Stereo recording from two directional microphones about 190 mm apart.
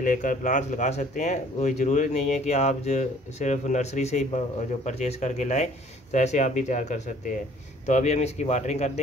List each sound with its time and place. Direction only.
0.0 s speech: 45° left (ahead or behind)